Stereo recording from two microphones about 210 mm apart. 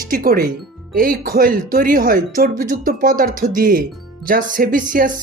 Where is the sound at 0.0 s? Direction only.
40° right (ahead or behind).